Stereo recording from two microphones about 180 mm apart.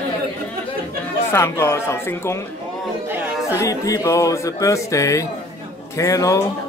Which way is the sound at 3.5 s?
20° left (ahead or behind).